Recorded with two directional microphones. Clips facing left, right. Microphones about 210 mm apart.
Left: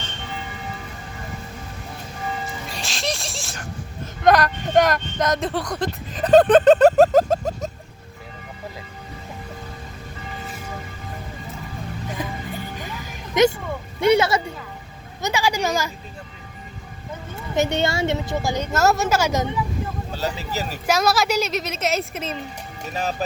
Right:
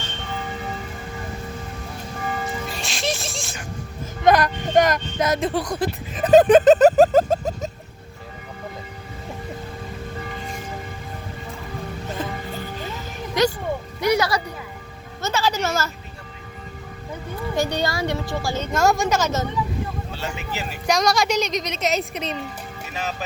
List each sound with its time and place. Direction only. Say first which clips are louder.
2.6 s music: right 1 dB; centre (ahead or behind)
4.2 s a woman's voice: even; centre (ahead or behind)
5.7 s a sound: right 1 dB; 5° right (ahead or behind)
13.4 s music: left 3 dB; 20° left (ahead or behind)
14.0 s speech: left 4 dB; 25° left (ahead or behind)
15.2 s speech: left 1 dB; 15° left (ahead or behind)
17.5 s a woman's voice: left 3 dB; 20° left (ahead or behind)
20.1 s speech: left 5 dB; 35° left (ahead or behind)
20.8 s a woman's voice: even; 5° left (ahead or behind)
22.9 s music: left 4 dB; 40° left (ahead or behind)